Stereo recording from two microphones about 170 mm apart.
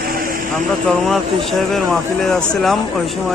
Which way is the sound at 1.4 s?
Centre (ahead or behind).